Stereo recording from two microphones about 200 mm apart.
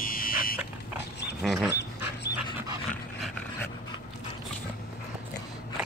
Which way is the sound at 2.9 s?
5° left (ahead or behind).